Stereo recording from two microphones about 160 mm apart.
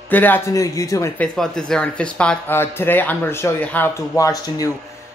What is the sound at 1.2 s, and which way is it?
Speech, 5° left (ahead or behind).